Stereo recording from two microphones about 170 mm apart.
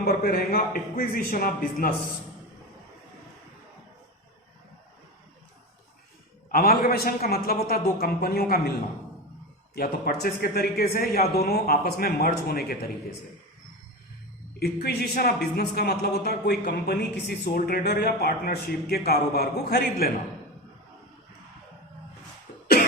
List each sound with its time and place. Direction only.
0.0 s a man's voice: 60° left (ahead or behind)
6.5 s a man's voice: 60° left (ahead or behind)
9.7 s a man's voice: 65° left (ahead or behind)
14.6 s speech: 65° left (ahead or behind)